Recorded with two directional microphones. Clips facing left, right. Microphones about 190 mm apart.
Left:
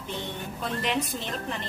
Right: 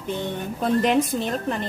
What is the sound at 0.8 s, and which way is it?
Speech, 45° right (ahead or behind).